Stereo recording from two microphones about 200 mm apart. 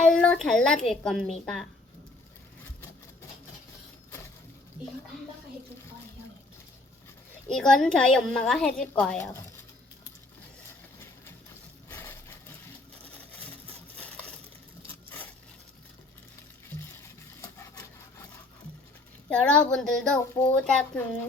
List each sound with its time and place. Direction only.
0.1 s a woman's voice: 5° left (ahead or behind)
7.5 s a woman's voice: centre (ahead or behind)
11.9 s vehicle: 10° left (ahead or behind)
19.3 s a woman's voice: 5° left (ahead or behind)